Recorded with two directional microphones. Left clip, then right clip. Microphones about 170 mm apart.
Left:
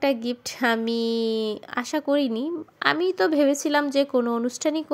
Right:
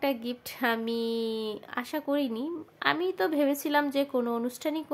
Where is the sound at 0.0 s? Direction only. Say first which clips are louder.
Left 6 dB; 35° left (ahead or behind).